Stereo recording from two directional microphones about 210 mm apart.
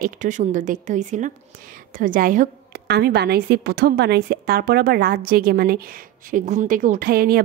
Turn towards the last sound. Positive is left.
turn(degrees=-45)  # may be behind; listen again after turning